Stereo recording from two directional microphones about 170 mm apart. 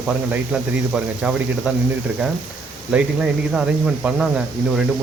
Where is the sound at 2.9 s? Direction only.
5° right (ahead or behind).